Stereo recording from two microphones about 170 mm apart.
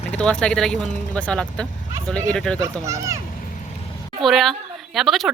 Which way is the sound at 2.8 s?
20° right (ahead or behind).